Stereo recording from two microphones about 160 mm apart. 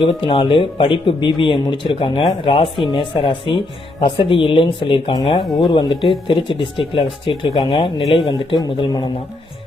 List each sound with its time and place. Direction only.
0.0 s a man's voice: 30° left (ahead or behind)